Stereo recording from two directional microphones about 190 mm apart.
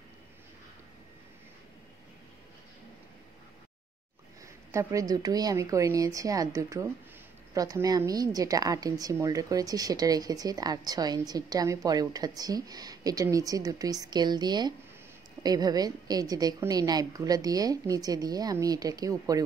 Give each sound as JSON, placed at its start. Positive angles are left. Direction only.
{"t": 4.7, "sound": "a woman's voice", "side_deg": -20}